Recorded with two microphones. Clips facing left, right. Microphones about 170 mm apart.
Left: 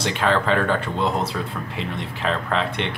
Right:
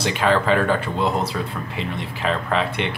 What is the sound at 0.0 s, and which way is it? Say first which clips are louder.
Speech: right 2 dB; 5° right (ahead or behind).